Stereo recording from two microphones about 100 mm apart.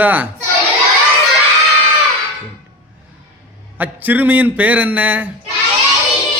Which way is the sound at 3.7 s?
15° right (ahead or behind).